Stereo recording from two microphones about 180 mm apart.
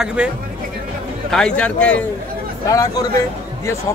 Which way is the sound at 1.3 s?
5° left (ahead or behind).